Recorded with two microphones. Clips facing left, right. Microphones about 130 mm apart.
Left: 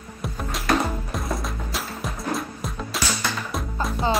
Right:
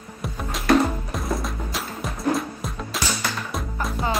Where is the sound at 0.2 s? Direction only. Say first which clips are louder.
Even; centre (ahead or behind).